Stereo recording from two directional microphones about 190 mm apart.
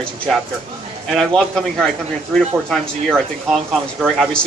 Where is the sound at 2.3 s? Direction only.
Centre (ahead or behind).